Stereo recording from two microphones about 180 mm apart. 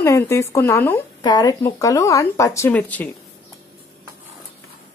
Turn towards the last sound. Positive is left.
turn(degrees=10)  # may be behind; listen again after turning